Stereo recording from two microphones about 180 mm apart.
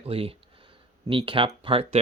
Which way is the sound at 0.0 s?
30° right (ahead or behind).